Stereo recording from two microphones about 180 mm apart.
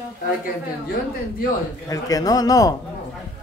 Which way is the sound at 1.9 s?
20° left (ahead or behind).